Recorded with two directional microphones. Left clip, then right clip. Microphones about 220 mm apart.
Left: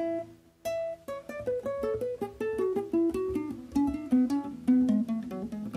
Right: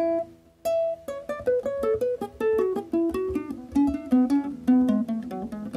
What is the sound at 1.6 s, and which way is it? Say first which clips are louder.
Music: right 6 dB; 10° right (ahead or behind).